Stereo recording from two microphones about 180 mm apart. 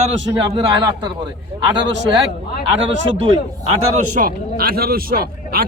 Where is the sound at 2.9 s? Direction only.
90° right.